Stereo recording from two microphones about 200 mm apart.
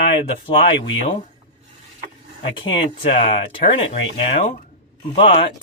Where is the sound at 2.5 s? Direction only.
25° left (ahead or behind).